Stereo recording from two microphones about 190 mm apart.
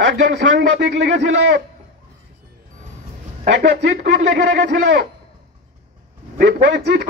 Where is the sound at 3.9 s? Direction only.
40° right (ahead or behind).